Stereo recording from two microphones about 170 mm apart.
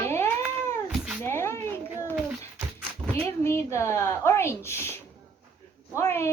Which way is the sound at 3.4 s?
15° left (ahead or behind).